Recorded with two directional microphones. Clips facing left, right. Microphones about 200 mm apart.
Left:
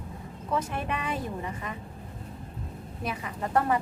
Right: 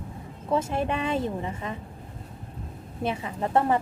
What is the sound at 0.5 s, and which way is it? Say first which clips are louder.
A woman's voice: right 5 dB; 25° right (ahead or behind).